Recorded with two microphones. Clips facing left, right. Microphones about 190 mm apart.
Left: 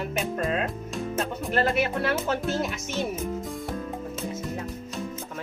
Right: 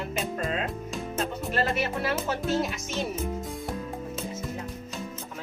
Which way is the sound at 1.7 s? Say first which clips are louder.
Left 3 dB; 55° left (ahead or behind).